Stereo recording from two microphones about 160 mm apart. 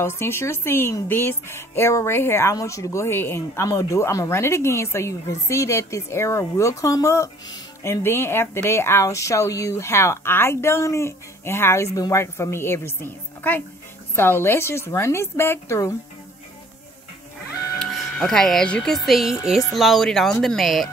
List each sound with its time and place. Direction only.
0.0 s speech: 15° left (ahead or behind)
17.7 s speech: 5° left (ahead or behind)